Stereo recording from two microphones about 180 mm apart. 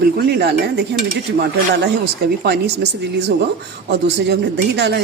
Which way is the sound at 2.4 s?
65° right (ahead or behind).